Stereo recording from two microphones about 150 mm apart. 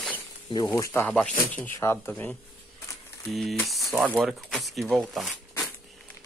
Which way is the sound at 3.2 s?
Centre (ahead or behind).